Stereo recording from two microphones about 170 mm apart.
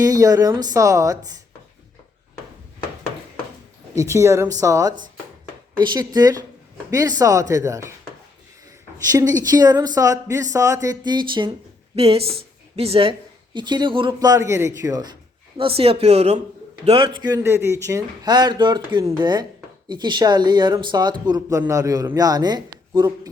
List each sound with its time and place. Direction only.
0.0 s speech: 20° right (ahead or behind)
3.9 s speech: 15° right (ahead or behind)
9.1 s speech: 20° right (ahead or behind)
15.5 s speech: 35° right (ahead or behind)